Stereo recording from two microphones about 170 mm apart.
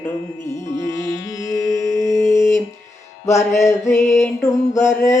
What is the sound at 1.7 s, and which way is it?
Music, 20° left (ahead or behind).